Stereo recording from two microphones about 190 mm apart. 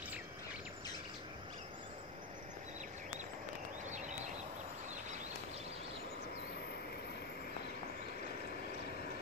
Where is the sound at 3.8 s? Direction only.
40° right (ahead or behind).